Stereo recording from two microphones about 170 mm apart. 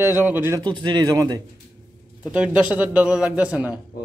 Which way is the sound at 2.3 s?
5° right (ahead or behind).